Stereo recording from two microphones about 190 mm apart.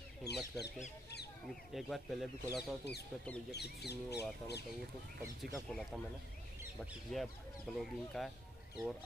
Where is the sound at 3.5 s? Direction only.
60° left (ahead or behind).